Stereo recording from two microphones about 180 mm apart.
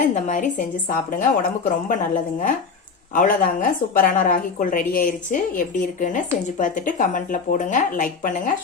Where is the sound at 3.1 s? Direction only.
50° left (ahead or behind).